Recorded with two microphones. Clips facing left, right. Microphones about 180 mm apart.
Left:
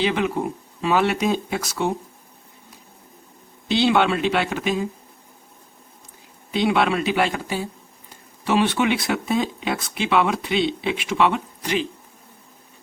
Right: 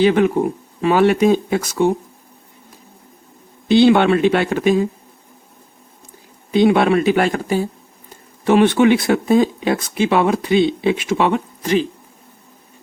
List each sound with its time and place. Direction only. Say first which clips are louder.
0.0 s speech: right 8 dB; 50° right (ahead or behind)
3.7 s speech: right 7 dB; 50° right (ahead or behind)
6.5 s speech: right 7 dB; 50° right (ahead or behind)